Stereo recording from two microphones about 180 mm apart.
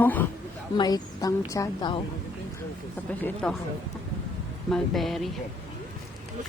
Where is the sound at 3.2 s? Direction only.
10° left (ahead or behind).